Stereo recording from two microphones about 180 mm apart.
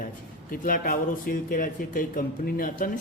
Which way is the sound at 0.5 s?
50° left (ahead or behind).